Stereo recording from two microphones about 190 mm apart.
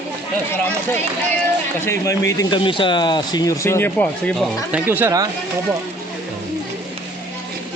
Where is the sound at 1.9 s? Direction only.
15° left (ahead or behind).